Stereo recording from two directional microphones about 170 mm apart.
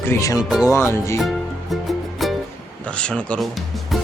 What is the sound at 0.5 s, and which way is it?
Music, 20° left (ahead or behind).